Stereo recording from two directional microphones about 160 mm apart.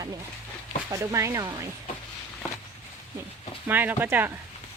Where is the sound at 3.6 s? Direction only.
10° right (ahead or behind).